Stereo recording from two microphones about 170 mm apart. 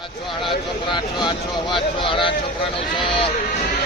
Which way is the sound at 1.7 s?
30° left (ahead or behind).